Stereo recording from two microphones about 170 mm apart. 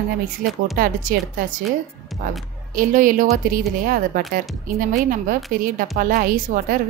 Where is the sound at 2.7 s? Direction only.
50° right (ahead or behind).